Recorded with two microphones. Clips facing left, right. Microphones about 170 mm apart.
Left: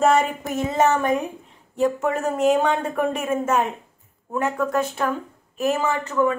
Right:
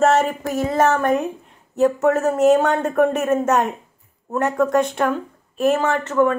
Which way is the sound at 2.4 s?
10° left (ahead or behind).